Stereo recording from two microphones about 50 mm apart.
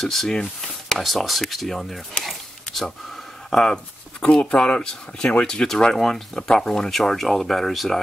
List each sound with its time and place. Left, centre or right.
0.0 s speech: centre